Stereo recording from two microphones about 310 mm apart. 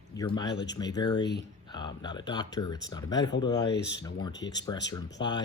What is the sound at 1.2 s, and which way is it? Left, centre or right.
Speech, left.